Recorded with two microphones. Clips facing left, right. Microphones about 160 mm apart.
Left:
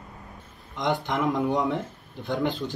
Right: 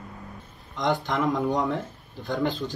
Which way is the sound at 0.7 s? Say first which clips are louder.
Right 1 dB; 20° left (ahead or behind).